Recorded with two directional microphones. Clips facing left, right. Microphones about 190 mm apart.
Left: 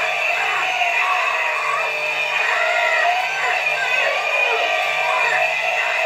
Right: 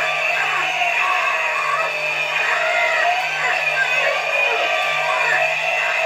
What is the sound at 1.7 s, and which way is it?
Music, centre (ahead or behind).